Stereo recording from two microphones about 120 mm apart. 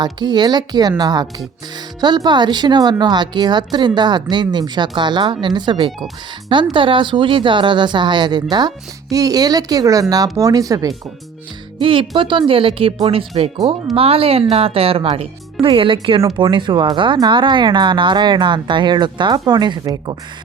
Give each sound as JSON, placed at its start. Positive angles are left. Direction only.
{"t": 0.0, "sound": "speech", "side_deg": -35}
{"t": 11.8, "sound": "speech", "side_deg": -45}